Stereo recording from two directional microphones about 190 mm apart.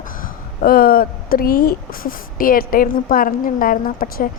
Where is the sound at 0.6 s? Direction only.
50° left (ahead or behind).